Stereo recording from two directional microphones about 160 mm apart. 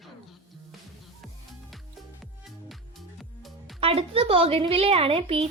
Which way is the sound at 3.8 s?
35° right (ahead or behind).